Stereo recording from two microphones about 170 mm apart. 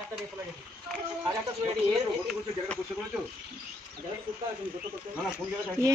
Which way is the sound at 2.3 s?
Centre (ahead or behind).